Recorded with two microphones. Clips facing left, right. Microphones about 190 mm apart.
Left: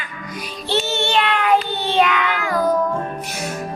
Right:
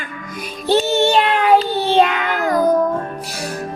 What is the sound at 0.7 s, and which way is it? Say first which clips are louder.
Child singing: right 5 dB; 35° right (ahead or behind).